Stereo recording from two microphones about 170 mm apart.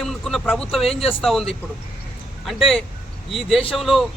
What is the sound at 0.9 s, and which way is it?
Speech, 35° left (ahead or behind).